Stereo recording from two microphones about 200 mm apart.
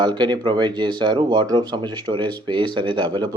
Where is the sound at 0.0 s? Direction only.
20° right (ahead or behind).